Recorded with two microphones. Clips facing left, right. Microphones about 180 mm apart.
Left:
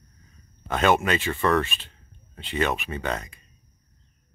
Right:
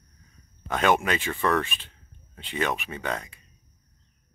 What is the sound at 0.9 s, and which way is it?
Speech, 10° right (ahead or behind).